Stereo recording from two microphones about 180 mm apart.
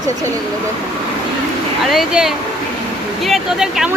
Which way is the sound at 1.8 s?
Centre (ahead or behind).